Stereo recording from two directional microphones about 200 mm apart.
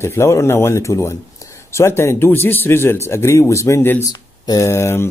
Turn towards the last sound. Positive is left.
turn(degrees=10)  # may be behind; listen again after turning